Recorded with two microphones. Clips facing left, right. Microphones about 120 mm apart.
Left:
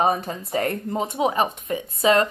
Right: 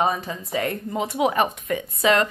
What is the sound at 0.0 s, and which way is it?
Speech, 50° left (ahead or behind).